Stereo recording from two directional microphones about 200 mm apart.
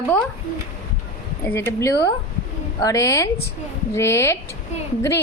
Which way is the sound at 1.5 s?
15° left (ahead or behind).